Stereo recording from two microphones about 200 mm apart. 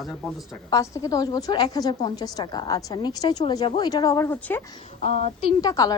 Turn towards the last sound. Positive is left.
turn(degrees=15)  # may be behind; listen again after turning